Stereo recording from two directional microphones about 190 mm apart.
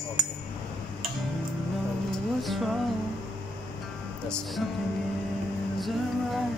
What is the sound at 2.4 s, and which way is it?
Music, centre (ahead or behind).